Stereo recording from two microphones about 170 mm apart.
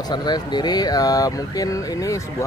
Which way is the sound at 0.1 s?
25° left (ahead or behind).